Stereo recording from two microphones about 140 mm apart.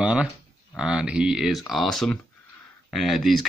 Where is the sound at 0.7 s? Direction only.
5° right (ahead or behind).